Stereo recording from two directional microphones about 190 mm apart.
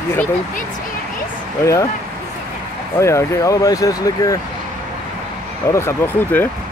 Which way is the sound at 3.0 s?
15° left (ahead or behind).